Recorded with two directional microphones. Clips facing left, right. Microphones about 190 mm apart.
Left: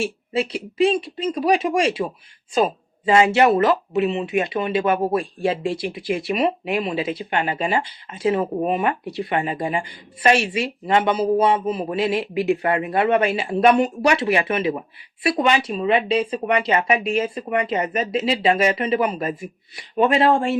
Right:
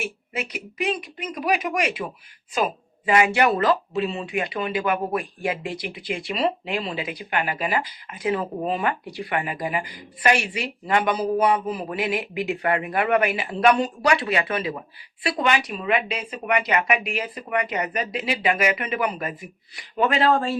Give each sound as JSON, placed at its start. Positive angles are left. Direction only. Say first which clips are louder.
{"t": 0.0, "sound": "a woman's voice", "louder": "left 7 dB", "side_deg": 30}